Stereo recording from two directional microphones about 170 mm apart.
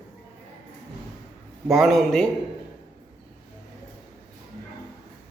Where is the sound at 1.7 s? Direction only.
Centre (ahead or behind).